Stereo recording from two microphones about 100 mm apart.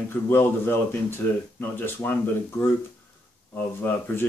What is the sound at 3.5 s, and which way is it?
Speech, 20° left (ahead or behind).